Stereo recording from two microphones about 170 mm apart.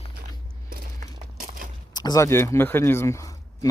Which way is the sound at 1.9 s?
25° left (ahead or behind).